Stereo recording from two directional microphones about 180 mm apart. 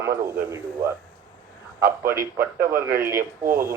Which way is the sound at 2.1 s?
55° right (ahead or behind).